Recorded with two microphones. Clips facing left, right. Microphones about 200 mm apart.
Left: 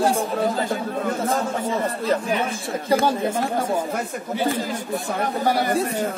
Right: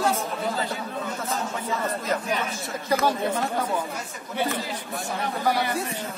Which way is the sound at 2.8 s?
30° left (ahead or behind).